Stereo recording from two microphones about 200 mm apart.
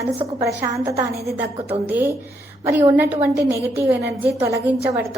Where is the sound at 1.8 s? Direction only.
10° right (ahead or behind).